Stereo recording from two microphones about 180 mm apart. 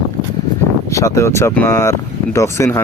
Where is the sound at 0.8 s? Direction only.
15° left (ahead or behind).